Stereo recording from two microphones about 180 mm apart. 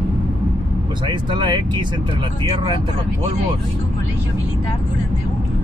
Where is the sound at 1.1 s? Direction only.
25° right (ahead or behind).